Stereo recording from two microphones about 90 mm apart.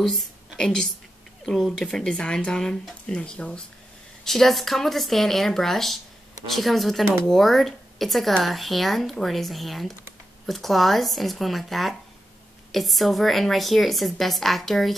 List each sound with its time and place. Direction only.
0.0 s a woman's voice: 5° left (ahead or behind)